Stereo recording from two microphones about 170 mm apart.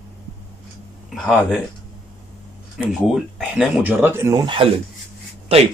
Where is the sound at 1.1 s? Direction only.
5° left (ahead or behind).